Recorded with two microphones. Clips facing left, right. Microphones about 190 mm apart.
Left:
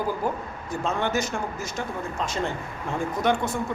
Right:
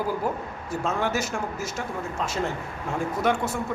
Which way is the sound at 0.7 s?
5° right (ahead or behind).